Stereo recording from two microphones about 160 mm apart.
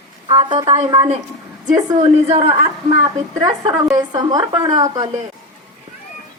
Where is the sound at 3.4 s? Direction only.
25° right (ahead or behind).